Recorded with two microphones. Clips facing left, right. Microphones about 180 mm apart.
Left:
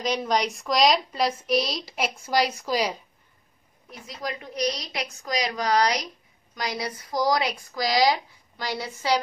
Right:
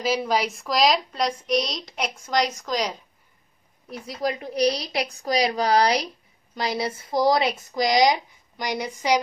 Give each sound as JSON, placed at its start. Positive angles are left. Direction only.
{"t": 0.0, "sound": "a woman's voice", "side_deg": -5}
{"t": 4.1, "sound": "a woman's voice", "side_deg": -35}